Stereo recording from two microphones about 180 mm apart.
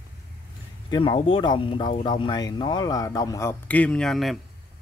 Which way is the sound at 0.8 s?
25° left (ahead or behind).